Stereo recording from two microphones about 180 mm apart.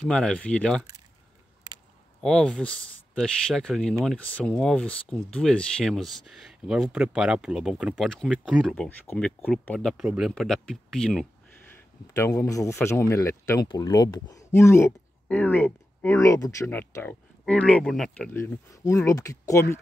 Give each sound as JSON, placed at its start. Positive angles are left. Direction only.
{"t": 0.0, "sound": "speech", "side_deg": 5}
{"t": 2.2, "sound": "speech", "side_deg": 0}
{"t": 12.1, "sound": "speech", "side_deg": 15}
{"t": 18.3, "sound": "speech", "side_deg": 15}